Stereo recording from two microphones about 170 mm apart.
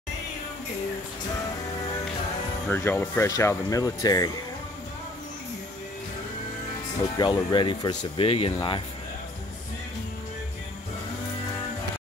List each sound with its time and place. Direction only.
2.7 s speech: 10° left (ahead or behind)
7.2 s speech: 25° left (ahead or behind)